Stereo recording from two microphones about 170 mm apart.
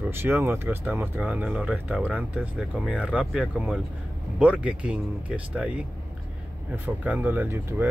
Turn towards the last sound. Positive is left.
turn(degrees=-15)  # may be behind; listen again after turning